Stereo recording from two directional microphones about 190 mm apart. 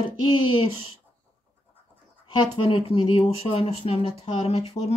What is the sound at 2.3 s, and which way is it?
Speech, 25° left (ahead or behind).